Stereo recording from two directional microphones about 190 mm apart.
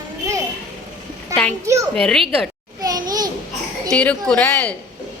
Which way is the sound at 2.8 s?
20° right (ahead or behind).